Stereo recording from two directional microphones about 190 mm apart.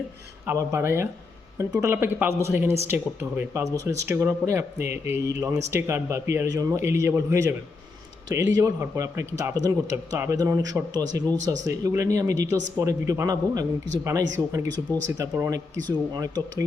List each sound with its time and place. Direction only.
0.4 s speech: 15° right (ahead or behind)
11.6 s speech: 15° right (ahead or behind)